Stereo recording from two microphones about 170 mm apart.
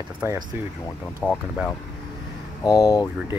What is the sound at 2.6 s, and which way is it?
Speech, 20° left (ahead or behind).